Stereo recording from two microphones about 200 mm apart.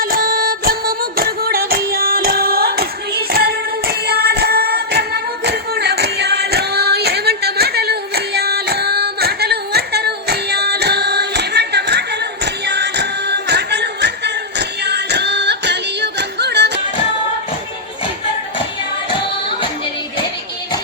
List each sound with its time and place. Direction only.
0.0 s music: 45° right (ahead or behind)
14.8 s yodeling: 55° right (ahead or behind)